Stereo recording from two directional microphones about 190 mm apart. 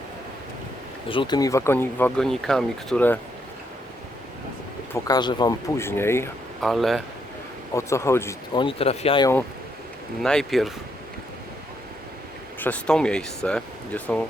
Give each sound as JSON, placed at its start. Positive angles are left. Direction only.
{"t": 1.0, "sound": "speech", "side_deg": 25}
{"t": 5.0, "sound": "speech", "side_deg": 20}
{"t": 6.6, "sound": "speech", "side_deg": 0}
{"t": 7.7, "sound": "speech", "side_deg": 15}
{"t": 8.5, "sound": "speech", "side_deg": 30}
{"t": 10.2, "sound": "speech", "side_deg": 0}
{"t": 12.5, "sound": "speech", "side_deg": 10}